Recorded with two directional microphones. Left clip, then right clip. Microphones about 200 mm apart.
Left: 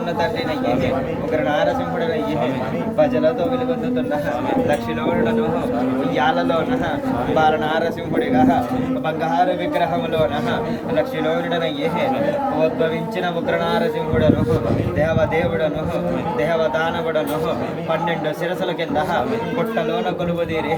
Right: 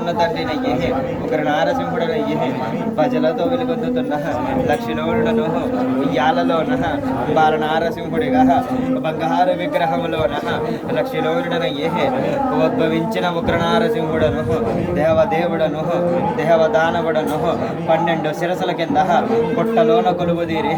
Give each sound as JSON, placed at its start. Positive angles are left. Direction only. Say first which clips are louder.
{"t": 3.0, "sound": "speech", "louder": "left 1 dB", "side_deg": 0}
{"t": 6.1, "sound": "speech", "louder": "right 2 dB", "side_deg": 0}
{"t": 8.3, "sound": "a man's voice", "louder": "right 2 dB", "side_deg": -10}
{"t": 13.5, "sound": "a man's voice", "louder": "right 2 dB", "side_deg": -30}
{"t": 15.0, "sound": "a man's voice", "louder": "right 5 dB", "side_deg": -5}
{"t": 16.5, "sound": "speech", "louder": "right 7 dB", "side_deg": 0}
{"t": 19.7, "sound": "speech", "louder": "right 10 dB", "side_deg": -5}